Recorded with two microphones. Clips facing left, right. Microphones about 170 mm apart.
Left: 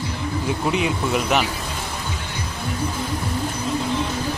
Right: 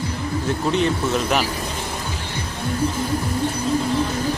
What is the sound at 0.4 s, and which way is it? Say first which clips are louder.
Speech: right 2 dB; 5° left (ahead or behind).